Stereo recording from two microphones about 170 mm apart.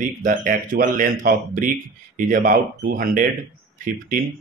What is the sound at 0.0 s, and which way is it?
Speech, 50° right (ahead or behind).